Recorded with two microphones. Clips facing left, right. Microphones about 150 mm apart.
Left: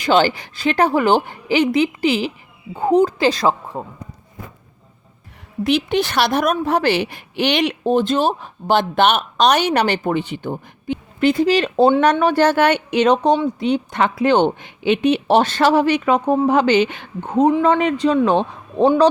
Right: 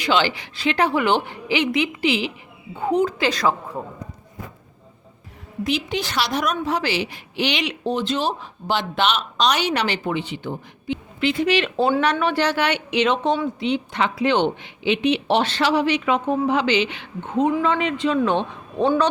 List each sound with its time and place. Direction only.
0.0 s a woman's voice: 45° left (ahead or behind); by 3.9 s 25° left (ahead or behind)
5.6 s a woman's voice: 60° left (ahead or behind); by 19.0 s 35° left (ahead or behind)